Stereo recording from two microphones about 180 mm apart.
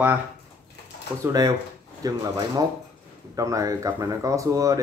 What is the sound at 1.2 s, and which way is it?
Speech, 20° right (ahead or behind).